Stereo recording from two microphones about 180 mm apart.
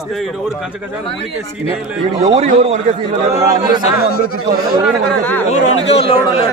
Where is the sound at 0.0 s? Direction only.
Centre (ahead or behind).